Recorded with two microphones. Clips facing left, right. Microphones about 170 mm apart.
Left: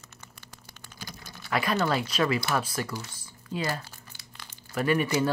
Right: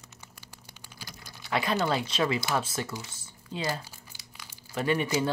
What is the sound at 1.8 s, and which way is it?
Speech, 25° right (ahead or behind).